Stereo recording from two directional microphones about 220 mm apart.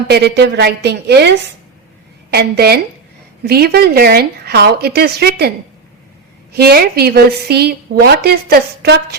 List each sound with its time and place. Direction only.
0.1 s a woman's voice: 50° right (ahead or behind)
2.3 s a woman's voice: 45° right (ahead or behind)
6.5 s a woman's voice: 45° right (ahead or behind)